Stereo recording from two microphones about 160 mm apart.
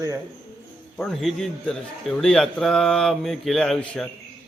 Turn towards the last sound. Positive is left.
turn(degrees=5)  # may be behind; listen again after turning